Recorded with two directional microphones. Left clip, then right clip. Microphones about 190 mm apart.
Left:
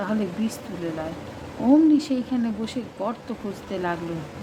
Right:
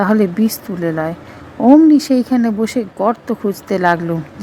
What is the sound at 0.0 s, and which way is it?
Speech, 40° right (ahead or behind).